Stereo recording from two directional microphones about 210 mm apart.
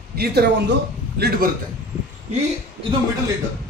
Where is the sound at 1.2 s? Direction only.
45° right (ahead or behind).